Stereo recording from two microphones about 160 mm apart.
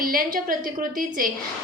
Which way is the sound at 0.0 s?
65° right (ahead or behind).